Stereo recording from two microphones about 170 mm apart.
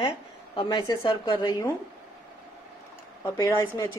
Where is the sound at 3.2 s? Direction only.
15° left (ahead or behind).